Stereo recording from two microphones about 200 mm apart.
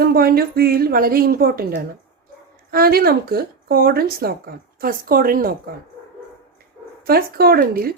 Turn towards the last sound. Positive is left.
turn(degrees=-50)  # may be behind; listen again after turning